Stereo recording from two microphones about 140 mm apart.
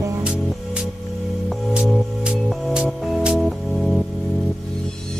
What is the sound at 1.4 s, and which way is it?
Music, 5° right (ahead or behind).